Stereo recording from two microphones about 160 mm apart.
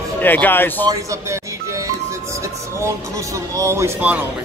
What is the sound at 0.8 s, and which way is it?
Speech, 20° right (ahead or behind).